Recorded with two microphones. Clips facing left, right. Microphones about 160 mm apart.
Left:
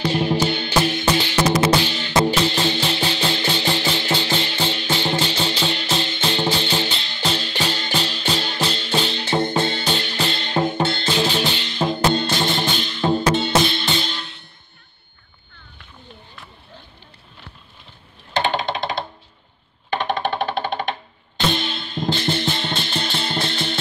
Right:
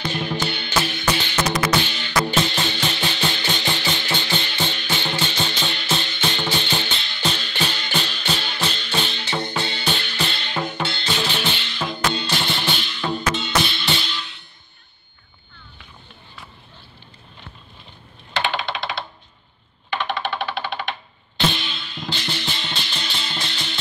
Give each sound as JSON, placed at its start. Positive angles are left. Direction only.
{"t": 0.0, "sound": "music", "side_deg": 30}
{"t": 9.2, "sound": "music", "side_deg": 45}
{"t": 10.0, "sound": "music", "side_deg": 35}
{"t": 10.8, "sound": "music", "side_deg": 45}
{"t": 12.1, "sound": "music", "side_deg": 45}
{"t": 13.0, "sound": "music", "side_deg": 30}
{"t": 13.7, "sound": "music", "side_deg": 45}
{"t": 18.3, "sound": "computer keyboard", "side_deg": 45}
{"t": 19.9, "sound": "music", "side_deg": 45}